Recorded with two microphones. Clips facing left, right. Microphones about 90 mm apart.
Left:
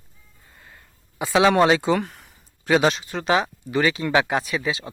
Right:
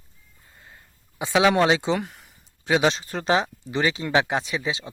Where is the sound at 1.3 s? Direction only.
30° left (ahead or behind).